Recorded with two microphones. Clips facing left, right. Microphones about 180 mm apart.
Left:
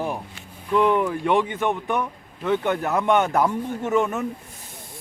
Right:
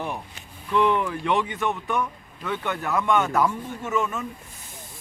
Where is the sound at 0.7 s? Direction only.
10° left (ahead or behind).